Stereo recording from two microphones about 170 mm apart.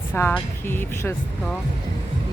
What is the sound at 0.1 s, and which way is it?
Speech, 10° left (ahead or behind).